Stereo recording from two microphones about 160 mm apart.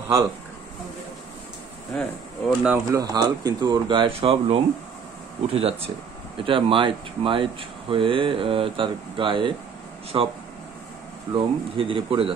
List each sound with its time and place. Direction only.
2.0 s speech: centre (ahead or behind)
2.7 s speech: 20° right (ahead or behind)
11.3 s speech: 35° right (ahead or behind)